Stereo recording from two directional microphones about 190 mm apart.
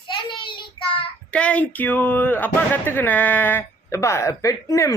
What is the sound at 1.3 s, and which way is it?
Speech, 5° left (ahead or behind).